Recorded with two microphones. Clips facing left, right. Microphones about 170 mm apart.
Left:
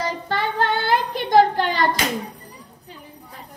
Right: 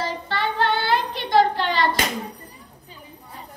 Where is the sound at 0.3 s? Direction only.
45° left (ahead or behind).